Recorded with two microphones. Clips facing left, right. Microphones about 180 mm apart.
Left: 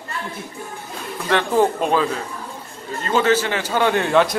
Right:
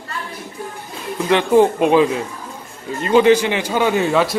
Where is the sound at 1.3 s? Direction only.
10° right (ahead or behind).